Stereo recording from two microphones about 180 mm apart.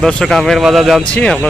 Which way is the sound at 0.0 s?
5° left (ahead or behind).